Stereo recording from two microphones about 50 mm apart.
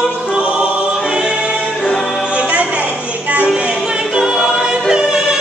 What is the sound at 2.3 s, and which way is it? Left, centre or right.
Music, right.